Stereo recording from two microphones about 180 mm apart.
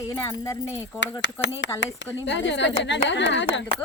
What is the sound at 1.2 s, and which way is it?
A woman's voice, 85° left.